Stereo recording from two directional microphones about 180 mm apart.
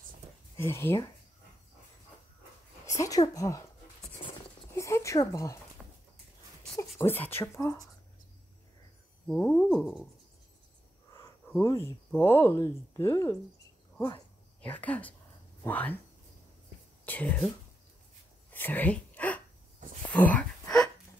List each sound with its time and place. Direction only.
0.6 s speech: 15° left (ahead or behind)
2.9 s speech: 20° left (ahead or behind)
4.7 s speech: 15° left (ahead or behind)
5.8 s a sound: centre (ahead or behind)
7.0 s speech: 10° left (ahead or behind)
9.3 s a sound: 5° left (ahead or behind)
11.1 s speech: 15° left (ahead or behind)
14.6 s speech: 10° left (ahead or behind)
17.0 s speech: 10° left (ahead or behind)
18.5 s a sound: 10° left (ahead or behind)